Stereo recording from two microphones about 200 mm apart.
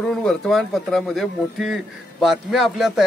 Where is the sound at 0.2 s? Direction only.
Centre (ahead or behind).